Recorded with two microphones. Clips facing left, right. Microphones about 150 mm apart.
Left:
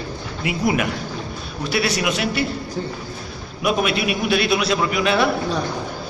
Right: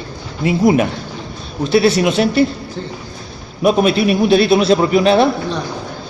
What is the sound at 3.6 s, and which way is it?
A man's voice, 30° right (ahead or behind).